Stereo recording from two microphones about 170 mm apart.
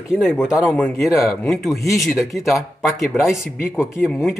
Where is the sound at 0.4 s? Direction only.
5° right (ahead or behind).